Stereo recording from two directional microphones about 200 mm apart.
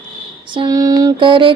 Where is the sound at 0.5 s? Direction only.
20° right (ahead or behind).